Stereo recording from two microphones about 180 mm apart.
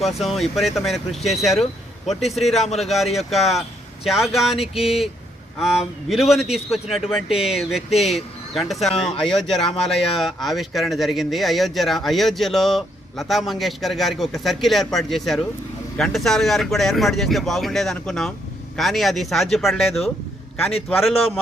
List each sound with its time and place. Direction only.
0.0 s speech: centre (ahead or behind)
2.6 s a man's voice: 35° left (ahead or behind)
2.8 s speech: centre (ahead or behind)